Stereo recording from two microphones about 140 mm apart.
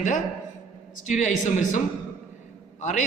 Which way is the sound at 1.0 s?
60° left (ahead or behind).